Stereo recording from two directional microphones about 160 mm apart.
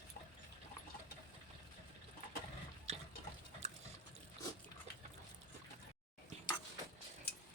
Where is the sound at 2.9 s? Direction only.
45° right (ahead or behind).